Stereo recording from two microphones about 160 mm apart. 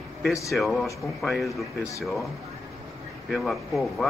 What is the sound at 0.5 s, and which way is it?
A man's voice, centre (ahead or behind).